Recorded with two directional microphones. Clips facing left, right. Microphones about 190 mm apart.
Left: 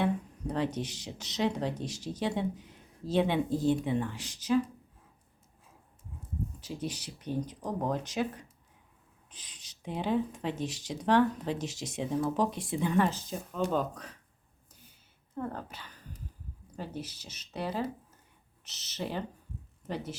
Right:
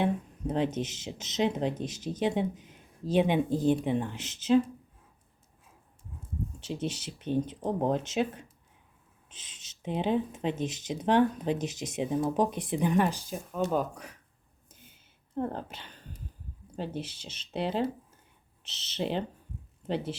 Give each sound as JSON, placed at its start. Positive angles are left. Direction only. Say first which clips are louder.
{"t": 0.0, "sound": "speech", "louder": "right 1 dB", "side_deg": -20}
{"t": 6.6, "sound": "speech", "louder": "right 6 dB", "side_deg": -25}
{"t": 15.4, "sound": "speech", "louder": "right 4 dB", "side_deg": -25}